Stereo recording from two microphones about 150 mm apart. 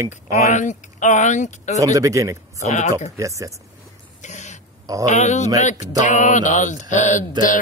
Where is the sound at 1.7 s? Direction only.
20° right (ahead or behind).